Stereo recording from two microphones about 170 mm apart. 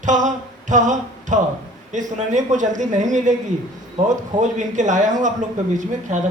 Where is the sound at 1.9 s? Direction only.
45° right (ahead or behind).